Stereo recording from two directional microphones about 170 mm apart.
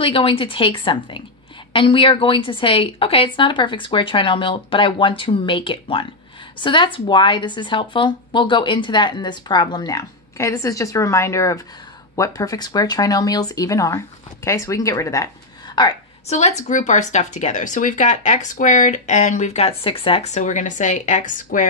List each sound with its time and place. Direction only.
0.0 s a woman's voice: 30° left (ahead or behind)
16.3 s speech: 40° left (ahead or behind)